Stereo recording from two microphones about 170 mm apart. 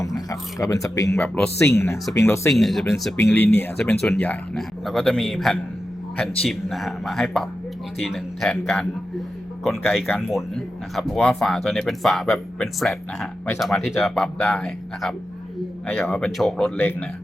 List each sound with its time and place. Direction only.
0.0 s speech: 20° left (ahead or behind)
1.1 s speech: 5° left (ahead or behind)
1.5 s speech: 15° left (ahead or behind)
2.6 s speech: centre (ahead or behind)
3.2 s speech: 10° left (ahead or behind)